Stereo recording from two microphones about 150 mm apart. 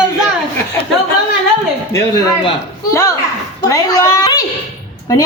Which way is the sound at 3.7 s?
25° left (ahead or behind).